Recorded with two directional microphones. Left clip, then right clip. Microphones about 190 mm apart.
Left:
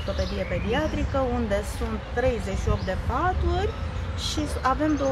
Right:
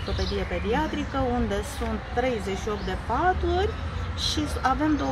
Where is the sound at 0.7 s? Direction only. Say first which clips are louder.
Left 4 dB; 5° right (ahead or behind).